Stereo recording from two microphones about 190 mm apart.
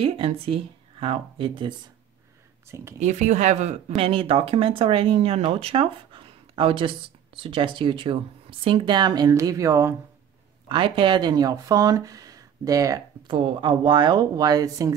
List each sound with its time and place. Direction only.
0.0 s speech: 30° right (ahead or behind)
2.7 s speech: 15° right (ahead or behind)
3.0 s speech: 40° right (ahead or behind); by 15.0 s 20° right (ahead or behind)